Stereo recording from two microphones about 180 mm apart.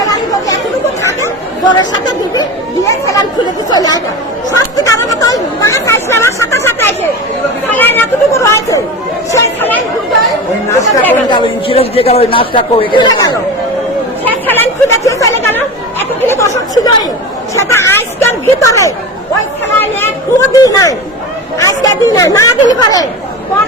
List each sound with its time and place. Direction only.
0.1 s chatter: 20° left (ahead or behind)
1.7 s chatter: 20° left (ahead or behind)
3.7 s a man's voice: 20° left (ahead or behind)
4.5 s chatter: 20° left (ahead or behind)
7.7 s a sound: 10° left (ahead or behind)
9.3 s chatter: 10° left (ahead or behind)
11.3 s a man's voice: 30° left (ahead or behind)
14.3 s chatter: 10° left (ahead or behind)
17.5 s a sound: 15° left (ahead or behind)
20.5 s a man's voice: 20° left (ahead or behind)